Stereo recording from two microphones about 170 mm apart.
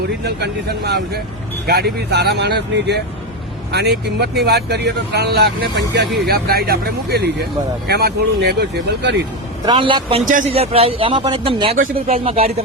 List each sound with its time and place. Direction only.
0.3 s speech: 75° right (ahead or behind)
9.6 s a man's voice: 30° right (ahead or behind)
10.2 s a man's voice: 50° right (ahead or behind)
10.5 s speech: 35° right (ahead or behind)